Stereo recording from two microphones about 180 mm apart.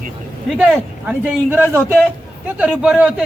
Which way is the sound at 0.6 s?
5° right (ahead or behind).